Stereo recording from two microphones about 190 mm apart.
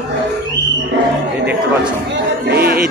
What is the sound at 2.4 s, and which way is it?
Music, 55° right (ahead or behind).